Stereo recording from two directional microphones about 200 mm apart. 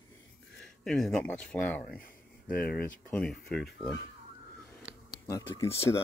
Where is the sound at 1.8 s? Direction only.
45° left (ahead or behind).